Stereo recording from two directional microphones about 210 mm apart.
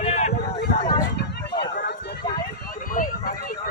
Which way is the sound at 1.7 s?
50° left (ahead or behind).